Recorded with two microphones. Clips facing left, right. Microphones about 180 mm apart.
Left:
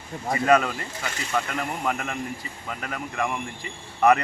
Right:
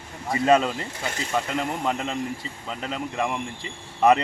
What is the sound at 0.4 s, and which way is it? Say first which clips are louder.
Speech: right 1 dB; 20° right (ahead or behind).